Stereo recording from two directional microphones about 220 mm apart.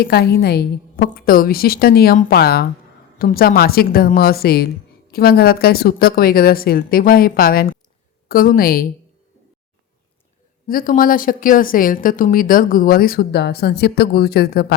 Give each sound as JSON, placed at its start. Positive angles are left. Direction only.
{"t": 0.0, "sound": "speech", "side_deg": 45}
{"t": 10.7, "sound": "speech", "side_deg": 40}